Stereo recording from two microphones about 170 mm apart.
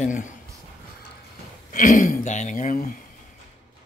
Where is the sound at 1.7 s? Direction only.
50° left (ahead or behind).